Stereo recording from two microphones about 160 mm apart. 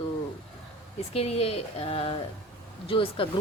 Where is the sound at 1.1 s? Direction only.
40° left (ahead or behind).